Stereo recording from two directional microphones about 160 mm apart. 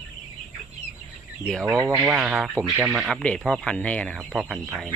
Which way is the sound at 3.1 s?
5° left (ahead or behind).